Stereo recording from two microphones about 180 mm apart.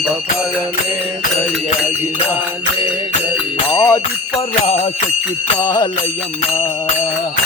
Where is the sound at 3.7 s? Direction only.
15° left (ahead or behind).